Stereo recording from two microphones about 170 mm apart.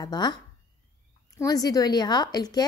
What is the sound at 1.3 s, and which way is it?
A woman's voice, 20° left (ahead or behind).